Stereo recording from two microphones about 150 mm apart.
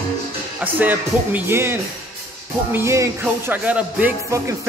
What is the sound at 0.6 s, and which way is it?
Music, 10° right (ahead or behind).